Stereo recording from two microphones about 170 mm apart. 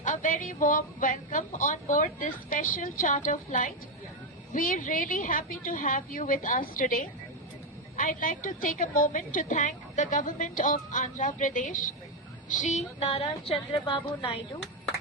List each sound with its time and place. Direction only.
0.0 s a woman's voice: 50° left (ahead or behind); by 14.4 s 30° left (ahead or behind)